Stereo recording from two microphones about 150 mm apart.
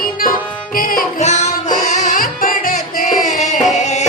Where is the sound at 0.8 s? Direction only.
70° left (ahead or behind).